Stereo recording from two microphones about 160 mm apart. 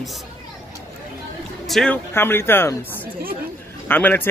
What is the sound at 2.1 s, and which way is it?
Speech, 15° left (ahead or behind).